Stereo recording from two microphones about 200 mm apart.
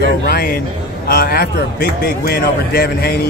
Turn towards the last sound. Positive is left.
turn(degrees=50)  # may be behind; listen again after turning